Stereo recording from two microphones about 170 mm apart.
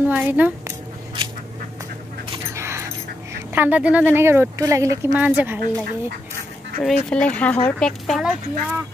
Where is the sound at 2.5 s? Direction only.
15° right (ahead or behind).